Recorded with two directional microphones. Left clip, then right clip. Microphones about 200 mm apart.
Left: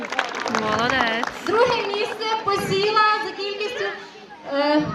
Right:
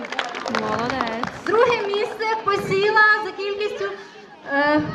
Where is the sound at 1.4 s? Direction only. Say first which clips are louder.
Right 2 dB; 10° left (ahead or behind).